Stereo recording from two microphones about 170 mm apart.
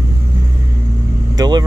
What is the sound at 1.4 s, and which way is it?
Speech, 25° right (ahead or behind).